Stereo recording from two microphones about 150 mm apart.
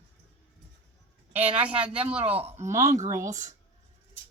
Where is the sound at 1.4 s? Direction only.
45° right (ahead or behind).